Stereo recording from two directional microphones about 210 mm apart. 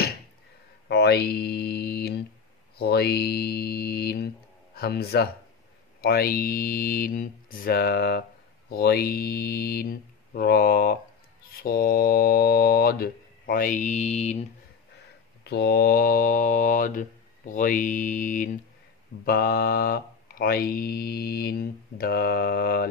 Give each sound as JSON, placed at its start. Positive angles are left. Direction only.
{"t": 0.8, "sound": "mantra", "side_deg": 50}
{"t": 2.8, "sound": "speech", "side_deg": 50}
{"t": 15.4, "sound": "speech", "side_deg": 50}